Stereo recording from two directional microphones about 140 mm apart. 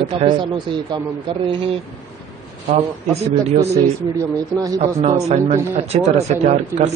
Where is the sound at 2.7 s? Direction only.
50° right (ahead or behind).